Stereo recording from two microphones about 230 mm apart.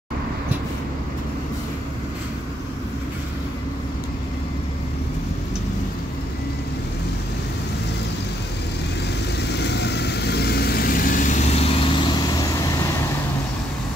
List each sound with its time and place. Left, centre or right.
9.5 s vehicle: left